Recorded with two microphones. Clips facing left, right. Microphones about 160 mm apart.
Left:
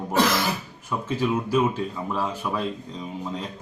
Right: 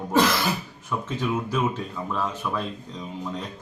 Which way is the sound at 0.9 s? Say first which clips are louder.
Left 2 dB; 10° left (ahead or behind).